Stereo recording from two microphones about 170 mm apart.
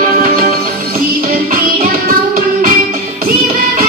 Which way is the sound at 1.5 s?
55° right (ahead or behind).